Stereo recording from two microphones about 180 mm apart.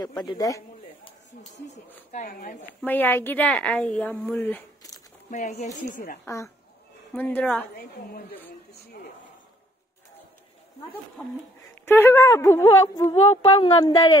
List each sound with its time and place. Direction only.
0.0 s speech: 20° left (ahead or behind)
2.2 s a woman's voice: 45° left (ahead or behind)
2.6 s a woman's voice: 10° left (ahead or behind)
5.3 s a woman's voice: 45° left (ahead or behind)
6.2 s a woman's voice: 15° left (ahead or behind)
7.7 s a woman's voice: 55° left (ahead or behind)
11.8 s a woman's voice: 15° left (ahead or behind)
13.3 s speech: 30° left (ahead or behind)